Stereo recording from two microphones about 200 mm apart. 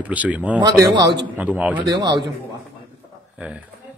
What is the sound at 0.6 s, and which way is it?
Speech, 20° right (ahead or behind).